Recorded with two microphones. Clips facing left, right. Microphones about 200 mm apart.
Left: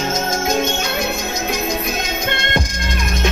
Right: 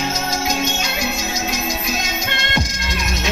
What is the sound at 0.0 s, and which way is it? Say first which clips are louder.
Music: left 2 dB; 50° left (ahead or behind).